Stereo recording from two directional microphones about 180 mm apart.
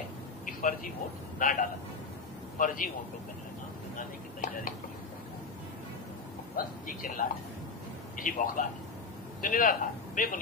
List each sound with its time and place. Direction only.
0.5 s a sound: 50° left (ahead or behind)
1.4 s speech: 50° left (ahead or behind)
6.5 s a man's voice: 50° left (ahead or behind)